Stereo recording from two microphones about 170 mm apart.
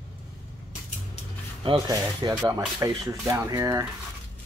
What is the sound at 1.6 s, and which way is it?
Speech, 30° right (ahead or behind).